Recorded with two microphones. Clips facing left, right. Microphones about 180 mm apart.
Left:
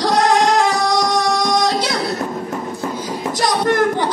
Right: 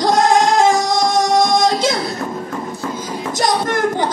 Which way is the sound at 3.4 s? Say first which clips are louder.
Left 1 dB; 45° right (ahead or behind).